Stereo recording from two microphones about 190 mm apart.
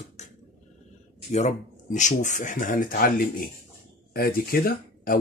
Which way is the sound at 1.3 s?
40° left (ahead or behind).